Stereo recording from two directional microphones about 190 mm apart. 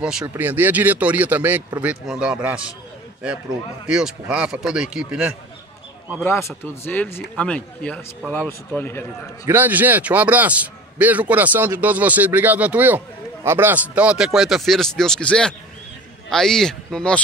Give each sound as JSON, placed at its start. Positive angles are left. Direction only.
{"t": 0.0, "sound": "a man's voice", "side_deg": -5}
{"t": 3.8, "sound": "a man's voice", "side_deg": -5}
{"t": 6.2, "sound": "a man's voice", "side_deg": 10}
{"t": 9.5, "sound": "a man's voice", "side_deg": -10}